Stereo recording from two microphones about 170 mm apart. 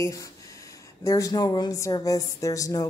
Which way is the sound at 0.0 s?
20° left (ahead or behind).